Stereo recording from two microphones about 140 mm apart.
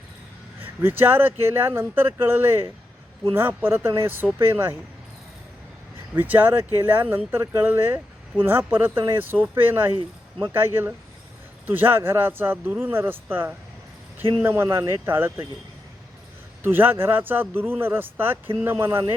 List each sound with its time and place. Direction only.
0.6 s speech: 15° right (ahead or behind)
6.1 s speech: 15° right (ahead or behind)
16.6 s speech: 15° right (ahead or behind)